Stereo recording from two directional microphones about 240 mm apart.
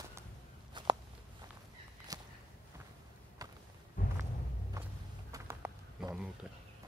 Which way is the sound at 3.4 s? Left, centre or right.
Centre.